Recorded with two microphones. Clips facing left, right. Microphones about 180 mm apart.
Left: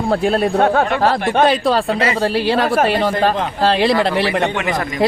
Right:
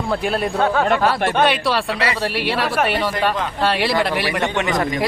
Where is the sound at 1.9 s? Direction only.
30° left (ahead or behind).